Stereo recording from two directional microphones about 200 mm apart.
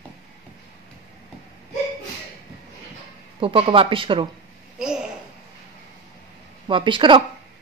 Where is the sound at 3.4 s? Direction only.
25° right (ahead or behind).